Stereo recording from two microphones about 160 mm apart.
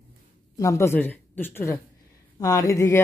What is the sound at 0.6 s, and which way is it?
Speech, 20° left (ahead or behind).